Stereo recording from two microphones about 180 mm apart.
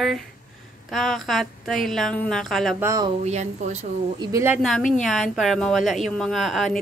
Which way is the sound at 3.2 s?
40° right (ahead or behind).